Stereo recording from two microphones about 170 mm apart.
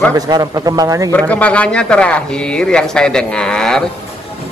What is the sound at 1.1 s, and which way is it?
A man's voice, 10° left (ahead or behind).